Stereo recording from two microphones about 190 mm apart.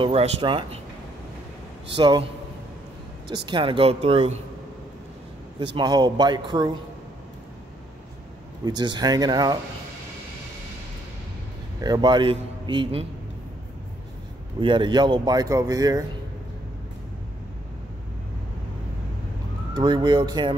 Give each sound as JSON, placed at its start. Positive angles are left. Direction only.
{"t": 0.0, "sound": "speech", "side_deg": -30}
{"t": 2.0, "sound": "speech", "side_deg": -25}
{"t": 3.4, "sound": "speech", "side_deg": -25}
{"t": 5.8, "sound": "speech", "side_deg": -20}
{"t": 8.6, "sound": "speech", "side_deg": -20}
{"t": 11.8, "sound": "speech", "side_deg": -20}
{"t": 14.6, "sound": "speech", "side_deg": -25}
{"t": 19.7, "sound": "speech", "side_deg": -25}